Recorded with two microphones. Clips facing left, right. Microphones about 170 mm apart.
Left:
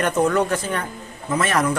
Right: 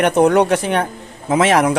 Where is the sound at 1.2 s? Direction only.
90° right.